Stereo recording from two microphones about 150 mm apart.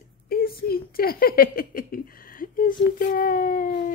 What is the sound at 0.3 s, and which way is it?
Speech, 80° left.